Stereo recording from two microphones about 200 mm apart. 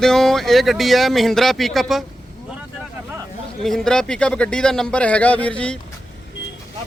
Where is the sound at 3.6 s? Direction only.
5° left (ahead or behind).